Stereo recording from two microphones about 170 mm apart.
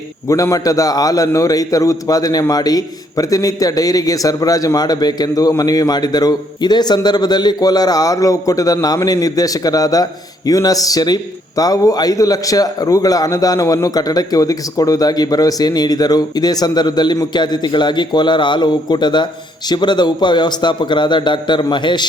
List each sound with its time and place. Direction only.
0.3 s a man's voice: 20° left (ahead or behind)